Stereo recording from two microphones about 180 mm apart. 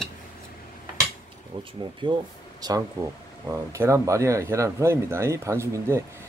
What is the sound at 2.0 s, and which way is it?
Speech, 25° right (ahead or behind).